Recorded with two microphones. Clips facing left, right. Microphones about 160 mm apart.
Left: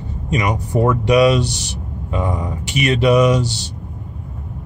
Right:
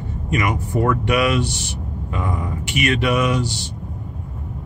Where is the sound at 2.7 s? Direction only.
35° left (ahead or behind).